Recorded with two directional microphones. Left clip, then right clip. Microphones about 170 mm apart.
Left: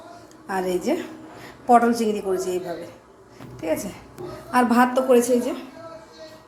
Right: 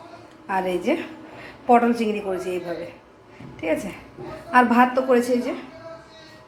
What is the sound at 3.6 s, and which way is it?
A woman's voice, 5° right (ahead or behind).